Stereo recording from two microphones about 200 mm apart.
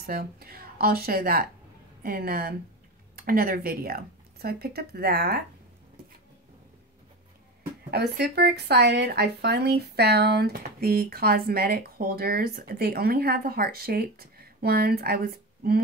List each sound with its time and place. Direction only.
0.0 s speech: 50° right (ahead or behind)
7.9 s speech: 55° right (ahead or behind)